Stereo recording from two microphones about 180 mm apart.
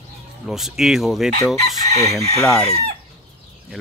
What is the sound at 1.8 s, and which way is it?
Chicken, 40° right (ahead or behind).